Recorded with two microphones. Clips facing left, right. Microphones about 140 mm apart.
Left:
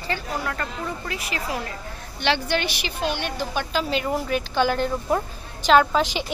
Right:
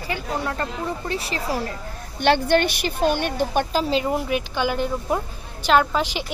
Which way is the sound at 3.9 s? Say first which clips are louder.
Right 2 dB; 25° right (ahead or behind).